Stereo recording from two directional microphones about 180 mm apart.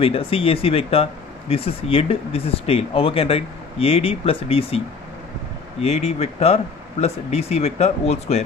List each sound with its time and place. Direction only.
0.0 s speech: 30° left (ahead or behind)